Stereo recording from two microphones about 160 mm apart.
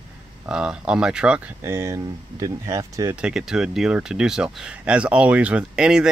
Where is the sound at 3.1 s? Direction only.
5° right (ahead or behind).